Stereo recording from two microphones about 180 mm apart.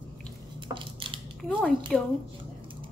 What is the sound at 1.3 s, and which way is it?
Speech, centre (ahead or behind).